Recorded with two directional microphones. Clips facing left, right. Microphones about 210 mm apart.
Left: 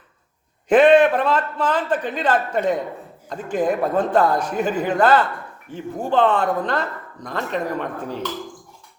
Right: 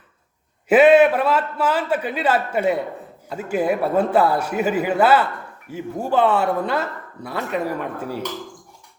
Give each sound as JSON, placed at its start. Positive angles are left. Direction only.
{"t": 0.7, "sound": "a man's voice", "side_deg": -5}